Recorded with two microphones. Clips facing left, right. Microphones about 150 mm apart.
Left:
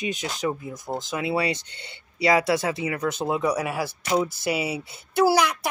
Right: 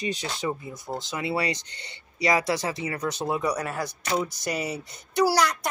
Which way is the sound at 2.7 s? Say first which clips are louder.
Left 3 dB; 10° left (ahead or behind).